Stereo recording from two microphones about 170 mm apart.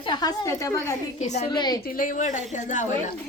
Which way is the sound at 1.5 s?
25° left (ahead or behind).